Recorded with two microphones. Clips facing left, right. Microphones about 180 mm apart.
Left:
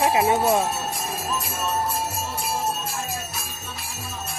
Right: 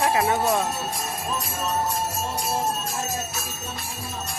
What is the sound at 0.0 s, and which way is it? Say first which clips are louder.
Speech: left 2 dB; 20° left (ahead or behind).